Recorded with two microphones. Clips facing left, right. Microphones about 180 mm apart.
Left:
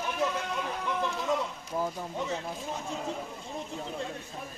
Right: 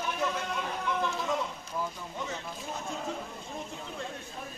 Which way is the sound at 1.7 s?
35° left (ahead or behind).